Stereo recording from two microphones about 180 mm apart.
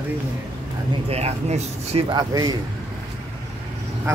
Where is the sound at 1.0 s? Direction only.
35° right (ahead or behind).